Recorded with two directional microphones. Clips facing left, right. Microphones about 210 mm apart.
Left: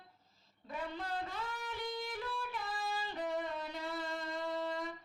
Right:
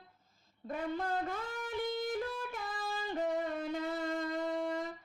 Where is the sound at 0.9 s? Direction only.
50° right (ahead or behind).